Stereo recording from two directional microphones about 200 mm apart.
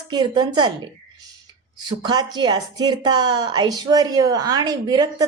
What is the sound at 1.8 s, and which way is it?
Speech, 20° right (ahead or behind).